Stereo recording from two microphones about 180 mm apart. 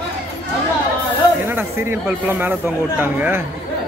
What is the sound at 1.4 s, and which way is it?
Speech, 10° right (ahead or behind).